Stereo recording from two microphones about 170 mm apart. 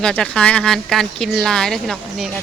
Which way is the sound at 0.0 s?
5° left (ahead or behind).